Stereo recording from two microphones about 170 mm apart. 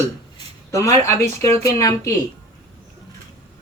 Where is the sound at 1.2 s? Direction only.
15° left (ahead or behind).